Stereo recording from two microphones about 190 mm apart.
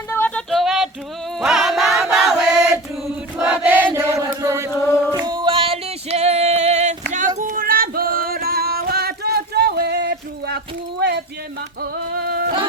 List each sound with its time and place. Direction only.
0.1 s a sound: 10° left (ahead or behind)
1.4 s music: centre (ahead or behind)
3.3 s chant: 5° right (ahead or behind)
4.7 s chant: 15° left (ahead or behind)
5.1 s music: 20° right (ahead or behind); by 10.6 s 60° right (ahead or behind)
11.8 s music: 55° right (ahead or behind)